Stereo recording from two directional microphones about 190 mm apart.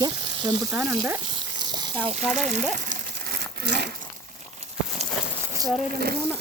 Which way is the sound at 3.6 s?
60° right (ahead or behind).